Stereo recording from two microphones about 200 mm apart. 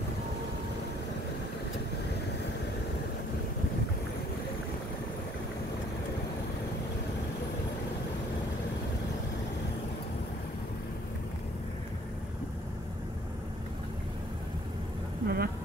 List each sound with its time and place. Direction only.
15.2 s vehicle: 50° right (ahead or behind)